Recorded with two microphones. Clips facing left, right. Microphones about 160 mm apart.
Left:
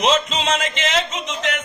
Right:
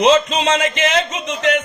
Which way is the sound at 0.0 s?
60° right (ahead or behind).